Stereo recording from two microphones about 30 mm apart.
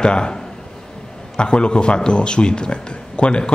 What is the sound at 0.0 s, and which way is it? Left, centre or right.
Speech, left.